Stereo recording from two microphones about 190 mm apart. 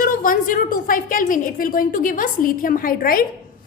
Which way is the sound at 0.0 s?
45° left (ahead or behind).